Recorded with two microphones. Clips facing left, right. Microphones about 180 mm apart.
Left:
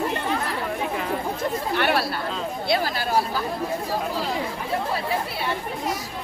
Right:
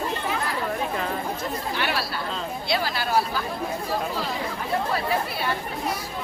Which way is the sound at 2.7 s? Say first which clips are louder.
Left 2 dB; 45° left (ahead or behind).